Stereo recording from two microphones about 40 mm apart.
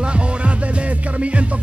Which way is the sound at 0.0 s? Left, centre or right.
Right.